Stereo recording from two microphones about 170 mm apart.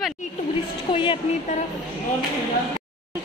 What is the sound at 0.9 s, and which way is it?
Speech, 30° left (ahead or behind).